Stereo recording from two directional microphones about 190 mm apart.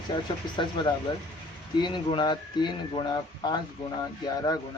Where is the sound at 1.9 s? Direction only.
25° left (ahead or behind).